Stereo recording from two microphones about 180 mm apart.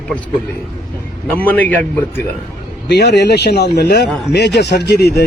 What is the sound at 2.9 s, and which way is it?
Speech, 70° left (ahead or behind).